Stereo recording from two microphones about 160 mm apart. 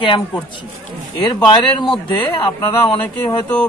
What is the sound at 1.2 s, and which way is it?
A man's voice, 30° left (ahead or behind).